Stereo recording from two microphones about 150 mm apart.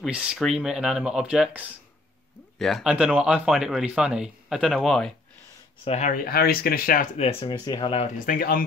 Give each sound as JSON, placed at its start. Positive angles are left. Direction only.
{"t": 0.0, "sound": "speech", "side_deg": -5}
{"t": 5.9, "sound": "speech", "side_deg": 50}
{"t": 6.2, "sound": "speech", "side_deg": 90}
{"t": 7.2, "sound": "speech", "side_deg": 40}
{"t": 8.2, "sound": "speech", "side_deg": 70}